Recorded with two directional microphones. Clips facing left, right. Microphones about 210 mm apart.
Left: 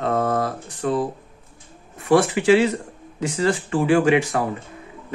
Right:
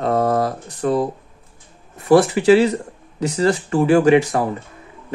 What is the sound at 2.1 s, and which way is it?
Speech, 35° right (ahead or behind).